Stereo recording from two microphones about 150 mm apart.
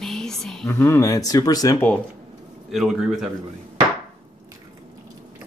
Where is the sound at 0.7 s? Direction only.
15° left (ahead or behind).